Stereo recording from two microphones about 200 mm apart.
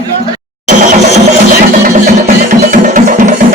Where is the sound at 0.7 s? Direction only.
40° right (ahead or behind).